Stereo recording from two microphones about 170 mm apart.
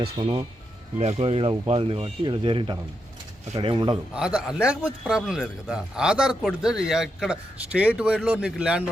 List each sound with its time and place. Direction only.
0.0 s a man's voice: 30° right (ahead or behind)
4.1 s a man's voice: 5° right (ahead or behind)